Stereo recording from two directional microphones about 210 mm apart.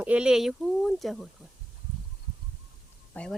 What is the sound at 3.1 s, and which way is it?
Speech, 10° left (ahead or behind).